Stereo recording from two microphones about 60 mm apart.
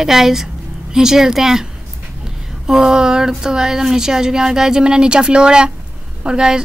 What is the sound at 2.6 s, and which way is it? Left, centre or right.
Speech, centre.